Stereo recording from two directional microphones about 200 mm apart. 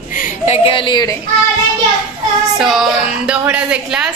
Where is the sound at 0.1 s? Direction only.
40° left (ahead or behind).